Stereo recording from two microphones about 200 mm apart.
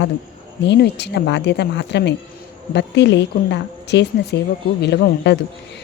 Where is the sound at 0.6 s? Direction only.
60° left (ahead or behind).